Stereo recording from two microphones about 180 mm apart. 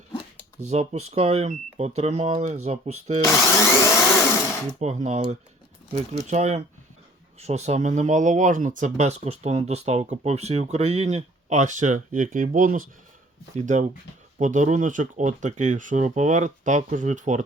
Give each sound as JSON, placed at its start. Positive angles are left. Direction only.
{"t": 0.6, "sound": "speech", "side_deg": -35}
{"t": 3.4, "sound": "vacuum cleaner", "side_deg": 15}
{"t": 4.8, "sound": "speech", "side_deg": -40}